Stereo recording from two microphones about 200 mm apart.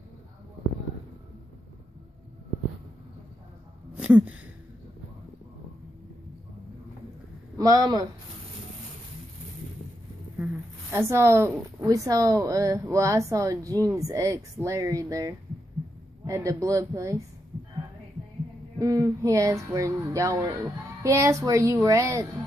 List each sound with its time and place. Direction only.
3.9 s a sound: 5° right (ahead or behind)
7.5 s speech: 20° right (ahead or behind)
10.3 s speech: 10° right (ahead or behind)
18.8 s speech: 15° right (ahead or behind)